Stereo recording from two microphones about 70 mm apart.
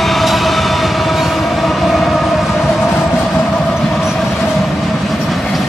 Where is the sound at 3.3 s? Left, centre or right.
Left.